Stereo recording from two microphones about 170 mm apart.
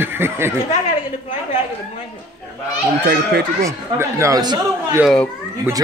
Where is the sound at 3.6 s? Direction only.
15° right (ahead or behind).